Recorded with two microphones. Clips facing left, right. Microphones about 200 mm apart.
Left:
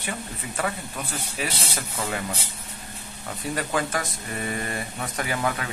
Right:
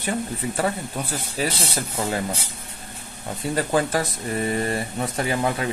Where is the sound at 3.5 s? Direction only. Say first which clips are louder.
Right 5 dB; 35° right (ahead or behind).